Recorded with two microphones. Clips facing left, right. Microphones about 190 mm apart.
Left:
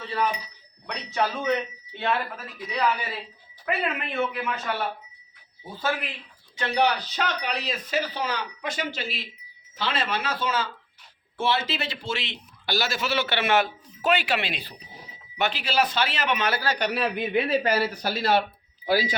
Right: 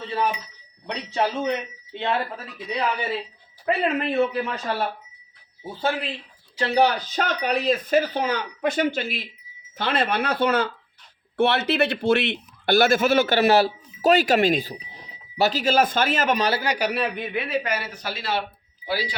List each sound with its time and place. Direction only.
0.9 s a man's voice: 25° right (ahead or behind)
3.7 s speech: 35° right (ahead or behind)
5.8 s a man's voice: 30° right (ahead or behind)
6.6 s a man's voice: 40° right (ahead or behind)
16.7 s a man's voice: 5° right (ahead or behind)
17.5 s speech: 35° left (ahead or behind)